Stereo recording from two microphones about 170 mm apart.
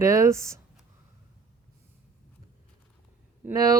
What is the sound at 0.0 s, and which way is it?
Speech, 20° right (ahead or behind).